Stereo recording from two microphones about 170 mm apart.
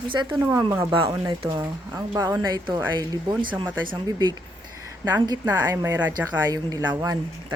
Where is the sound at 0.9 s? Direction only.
25° right (ahead or behind).